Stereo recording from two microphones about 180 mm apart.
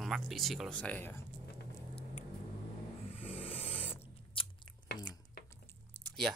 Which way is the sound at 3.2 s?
40° left (ahead or behind).